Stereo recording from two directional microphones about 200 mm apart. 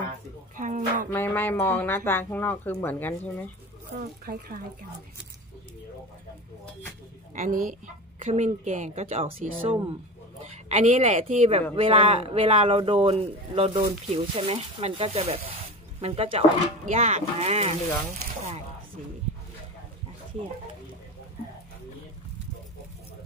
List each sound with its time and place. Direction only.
0.6 s a sound: 40° right (ahead or behind)
1.1 s speech: 10° left (ahead or behind)
7.3 s a woman's voice: 40° right (ahead or behind)